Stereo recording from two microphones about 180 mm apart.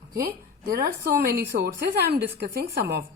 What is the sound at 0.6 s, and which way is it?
Speech, 55° right (ahead or behind).